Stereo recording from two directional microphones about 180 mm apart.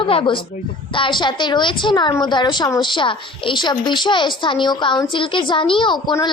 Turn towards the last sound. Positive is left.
turn(degrees=25)  # may be behind; listen again after turning